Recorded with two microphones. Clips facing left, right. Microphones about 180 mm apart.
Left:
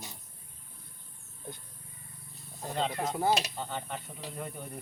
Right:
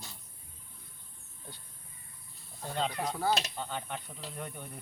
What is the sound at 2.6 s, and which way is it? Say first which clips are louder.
Speech: left 1 dB; centre (ahead or behind).